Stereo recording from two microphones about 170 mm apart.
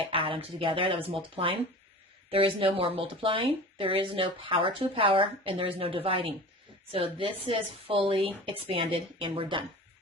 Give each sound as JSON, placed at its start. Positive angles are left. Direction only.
{"t": 0.0, "sound": "speech", "side_deg": -30}